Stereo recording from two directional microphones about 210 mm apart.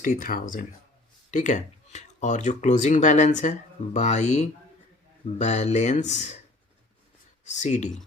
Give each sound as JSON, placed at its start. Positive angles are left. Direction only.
{"t": 0.0, "sound": "speech", "side_deg": 40}
{"t": 7.4, "sound": "speech", "side_deg": 35}